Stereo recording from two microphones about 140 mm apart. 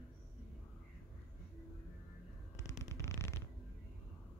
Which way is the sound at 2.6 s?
20° left (ahead or behind).